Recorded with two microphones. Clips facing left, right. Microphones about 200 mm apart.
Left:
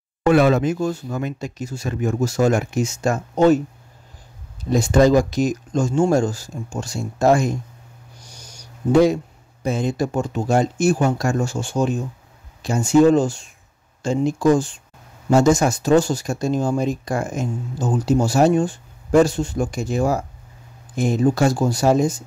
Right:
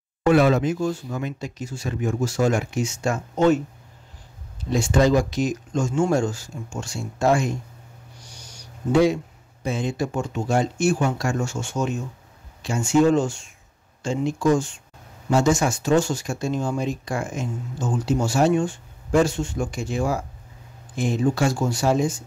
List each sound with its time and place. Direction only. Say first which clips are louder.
0.3 s speech: left 2 dB; 50° left (ahead or behind)
4.6 s speech: left 4 dB; 40° left (ahead or behind)